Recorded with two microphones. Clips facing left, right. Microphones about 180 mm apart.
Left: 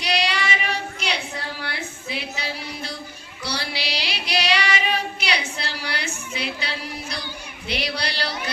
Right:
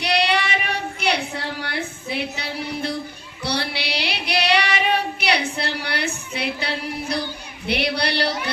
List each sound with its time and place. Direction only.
0.0 s child singing: 60° right (ahead or behind)
2.0 s a sound: 60° right (ahead or behind)
3.4 s child singing: 60° right (ahead or behind)
7.7 s speech: 60° right (ahead or behind)